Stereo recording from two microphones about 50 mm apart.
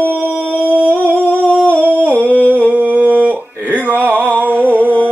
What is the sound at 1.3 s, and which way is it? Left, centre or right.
Humming, left.